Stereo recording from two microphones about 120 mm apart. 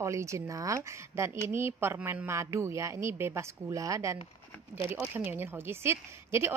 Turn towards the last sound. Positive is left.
turn(degrees=-20)  # may be behind; listen again after turning